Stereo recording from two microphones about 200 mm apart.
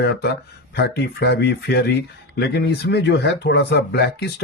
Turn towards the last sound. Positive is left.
turn(degrees=55)  # may be behind; listen again after turning